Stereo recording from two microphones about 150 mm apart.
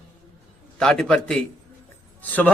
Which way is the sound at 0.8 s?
5° left (ahead or behind).